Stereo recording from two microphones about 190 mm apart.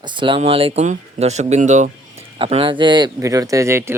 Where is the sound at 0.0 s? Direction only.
25° right (ahead or behind).